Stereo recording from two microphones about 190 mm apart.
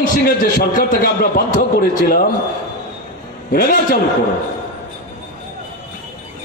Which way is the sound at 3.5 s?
50° left (ahead or behind).